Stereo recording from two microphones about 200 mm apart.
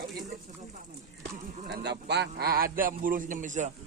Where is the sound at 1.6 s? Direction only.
55° right (ahead or behind); by 3.7 s 40° right (ahead or behind).